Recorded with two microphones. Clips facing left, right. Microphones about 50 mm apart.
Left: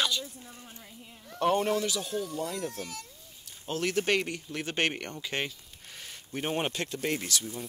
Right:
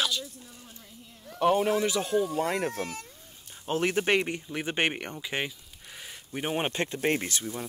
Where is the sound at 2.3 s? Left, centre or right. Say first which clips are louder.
Right 6 dB; right; by 6.7 s centre.